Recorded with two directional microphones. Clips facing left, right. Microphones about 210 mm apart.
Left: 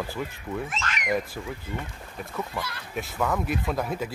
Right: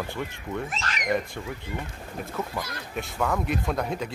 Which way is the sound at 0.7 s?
35° right (ahead or behind).